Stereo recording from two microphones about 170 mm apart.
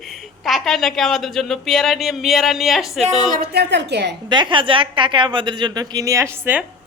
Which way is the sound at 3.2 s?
55° right (ahead or behind).